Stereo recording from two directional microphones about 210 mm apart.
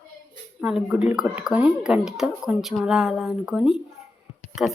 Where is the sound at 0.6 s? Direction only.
5° right (ahead or behind).